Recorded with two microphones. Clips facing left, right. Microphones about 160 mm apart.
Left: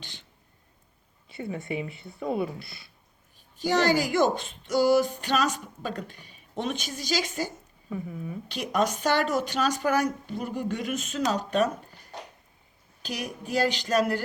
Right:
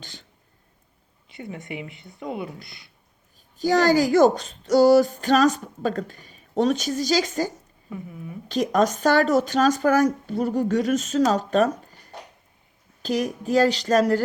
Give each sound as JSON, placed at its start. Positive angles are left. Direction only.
{"t": 0.0, "sound": "a sound", "side_deg": -45}
{"t": 1.3, "sound": "speech", "side_deg": -20}
{"t": 3.6, "sound": "speech", "side_deg": -45}
{"t": 13.0, "sound": "speech", "side_deg": -40}